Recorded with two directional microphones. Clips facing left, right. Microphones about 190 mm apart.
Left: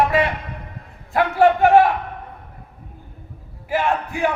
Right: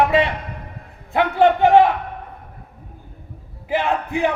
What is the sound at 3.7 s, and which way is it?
Speech, 20° right (ahead or behind).